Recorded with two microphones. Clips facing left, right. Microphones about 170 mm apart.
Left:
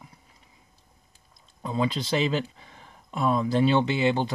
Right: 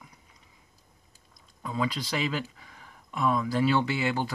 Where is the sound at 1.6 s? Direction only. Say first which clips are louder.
Left 4 dB; 25° left (ahead or behind).